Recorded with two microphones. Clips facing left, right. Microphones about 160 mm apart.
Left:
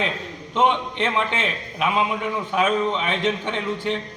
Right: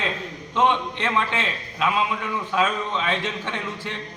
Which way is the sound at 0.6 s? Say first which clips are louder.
Left 1 dB; 20° left (ahead or behind).